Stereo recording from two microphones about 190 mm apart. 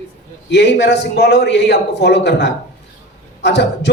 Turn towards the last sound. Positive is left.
turn(degrees=65)  # may be behind; listen again after turning